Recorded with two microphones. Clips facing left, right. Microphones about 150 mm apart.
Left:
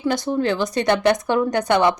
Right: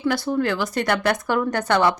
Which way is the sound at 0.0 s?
20° left (ahead or behind).